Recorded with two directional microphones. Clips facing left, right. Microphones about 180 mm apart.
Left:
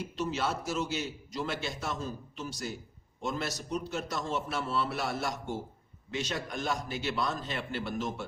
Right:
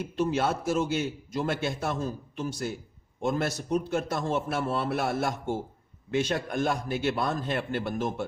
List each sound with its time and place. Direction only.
0.2 s a man's voice: 55° right (ahead or behind)